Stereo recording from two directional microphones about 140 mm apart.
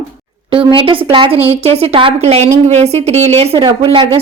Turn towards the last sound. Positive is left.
turn(degrees=-40)  # may be behind; listen again after turning